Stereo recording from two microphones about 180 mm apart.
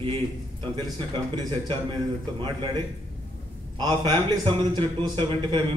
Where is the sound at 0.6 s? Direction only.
25° right (ahead or behind).